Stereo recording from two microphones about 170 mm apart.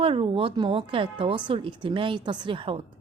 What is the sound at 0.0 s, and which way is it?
A woman's voice, 30° right (ahead or behind).